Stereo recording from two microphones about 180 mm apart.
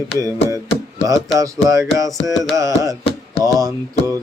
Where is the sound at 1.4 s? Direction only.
20° right (ahead or behind).